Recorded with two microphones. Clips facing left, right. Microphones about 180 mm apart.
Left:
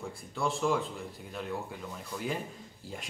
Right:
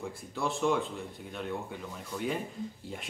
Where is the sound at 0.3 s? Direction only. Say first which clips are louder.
Even; centre (ahead or behind).